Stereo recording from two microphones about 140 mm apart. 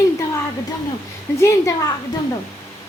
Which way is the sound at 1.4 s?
20° left (ahead or behind).